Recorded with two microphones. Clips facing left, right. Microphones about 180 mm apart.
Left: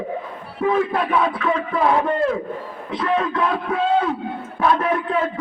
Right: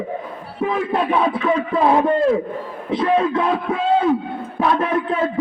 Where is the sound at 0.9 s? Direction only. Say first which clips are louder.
Right 2 dB; 25° right (ahead or behind).